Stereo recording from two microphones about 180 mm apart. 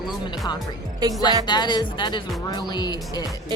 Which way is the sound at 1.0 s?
20° right (ahead or behind).